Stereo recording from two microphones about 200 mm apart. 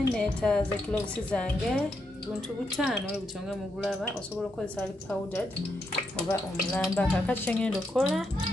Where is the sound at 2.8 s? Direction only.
5° right (ahead or behind).